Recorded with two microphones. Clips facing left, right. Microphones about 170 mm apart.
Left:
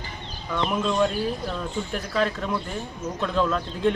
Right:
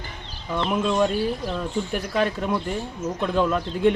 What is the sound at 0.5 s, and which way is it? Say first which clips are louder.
Speech: right 2 dB; 10° right (ahead or behind).